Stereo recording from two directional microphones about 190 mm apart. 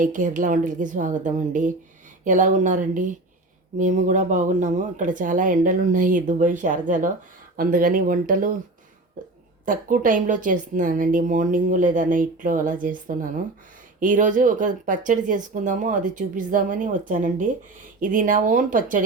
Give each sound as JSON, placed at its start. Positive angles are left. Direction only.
{"t": 0.0, "sound": "a woman's voice", "side_deg": -45}
{"t": 9.6, "sound": "a woman's voice", "side_deg": -45}